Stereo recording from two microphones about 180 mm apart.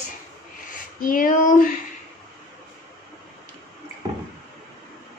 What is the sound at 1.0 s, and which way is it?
Female singing, 50° left (ahead or behind).